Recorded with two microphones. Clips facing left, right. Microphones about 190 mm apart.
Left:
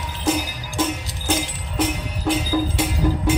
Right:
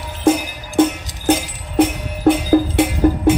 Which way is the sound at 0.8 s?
60° right (ahead or behind).